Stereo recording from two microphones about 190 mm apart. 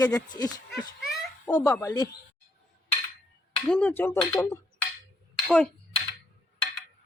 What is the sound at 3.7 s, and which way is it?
Speech, 5° left (ahead or behind).